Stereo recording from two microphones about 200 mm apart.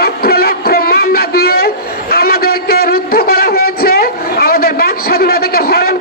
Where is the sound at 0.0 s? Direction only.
50° left (ahead or behind).